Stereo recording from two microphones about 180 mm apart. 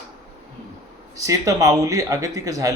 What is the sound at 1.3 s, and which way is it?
Speech, 20° right (ahead or behind).